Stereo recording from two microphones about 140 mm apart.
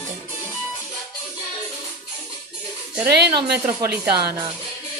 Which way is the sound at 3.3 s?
30° right (ahead or behind).